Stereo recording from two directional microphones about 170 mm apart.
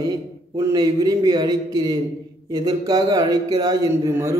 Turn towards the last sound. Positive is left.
turn(degrees=-20)  # may be behind; listen again after turning